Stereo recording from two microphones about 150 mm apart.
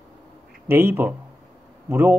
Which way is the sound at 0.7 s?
15° right (ahead or behind).